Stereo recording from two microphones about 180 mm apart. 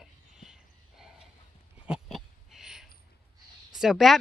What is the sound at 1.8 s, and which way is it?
Owl, 5° right (ahead or behind).